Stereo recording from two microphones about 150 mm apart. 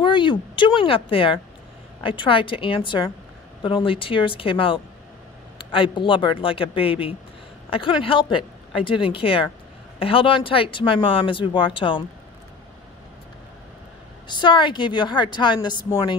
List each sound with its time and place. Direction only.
0.0 s speech: 35° left (ahead or behind)
14.2 s speech: 30° left (ahead or behind)